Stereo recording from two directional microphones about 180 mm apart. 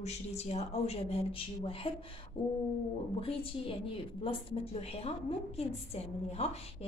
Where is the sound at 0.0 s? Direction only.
35° left (ahead or behind).